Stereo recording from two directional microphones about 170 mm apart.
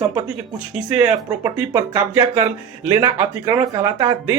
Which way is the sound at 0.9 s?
10° right (ahead or behind).